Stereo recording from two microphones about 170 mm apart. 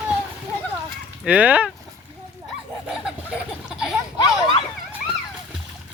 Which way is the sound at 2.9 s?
5° right (ahead or behind).